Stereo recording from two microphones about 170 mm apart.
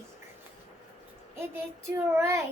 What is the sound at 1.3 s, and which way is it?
Child singing, 15° right (ahead or behind).